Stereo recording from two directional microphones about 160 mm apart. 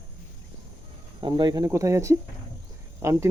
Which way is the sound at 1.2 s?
25° right (ahead or behind).